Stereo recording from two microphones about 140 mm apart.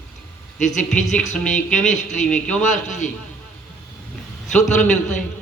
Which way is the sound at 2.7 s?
60° left (ahead or behind).